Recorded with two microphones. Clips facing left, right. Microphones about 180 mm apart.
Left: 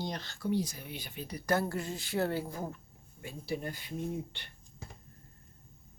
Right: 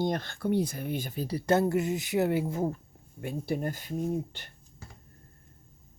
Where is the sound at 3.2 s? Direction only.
55° right (ahead or behind).